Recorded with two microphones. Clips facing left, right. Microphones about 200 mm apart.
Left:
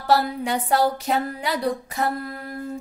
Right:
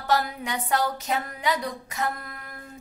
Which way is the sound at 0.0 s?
30° left (ahead or behind).